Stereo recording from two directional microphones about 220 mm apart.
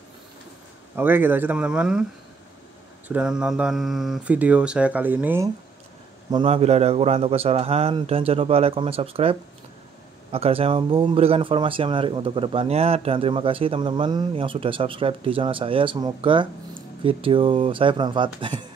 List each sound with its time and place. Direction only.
0.9 s speech: 10° right (ahead or behind)
3.1 s speech: 5° right (ahead or behind)
6.3 s speech: 25° right (ahead or behind)